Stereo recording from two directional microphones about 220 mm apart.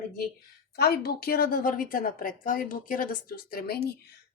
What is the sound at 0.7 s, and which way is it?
A woman's voice, 45° left (ahead or behind).